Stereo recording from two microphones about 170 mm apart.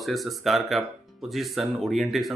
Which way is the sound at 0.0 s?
Centre (ahead or behind).